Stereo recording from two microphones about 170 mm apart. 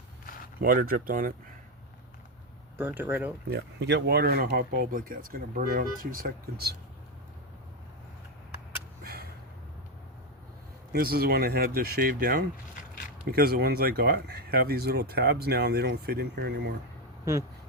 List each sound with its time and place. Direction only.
0.6 s speech: 60° right (ahead or behind)
2.7 s speech: 10° right (ahead or behind)
3.5 s speech: 90° right; by 6.7 s 65° right (ahead or behind)
10.9 s speech: 65° right (ahead or behind)